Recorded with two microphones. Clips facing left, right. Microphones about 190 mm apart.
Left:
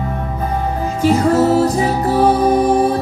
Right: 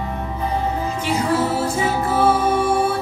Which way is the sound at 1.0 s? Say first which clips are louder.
Left 9 dB; 45° left (ahead or behind).